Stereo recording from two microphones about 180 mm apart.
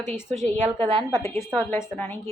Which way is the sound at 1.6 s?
10° left (ahead or behind).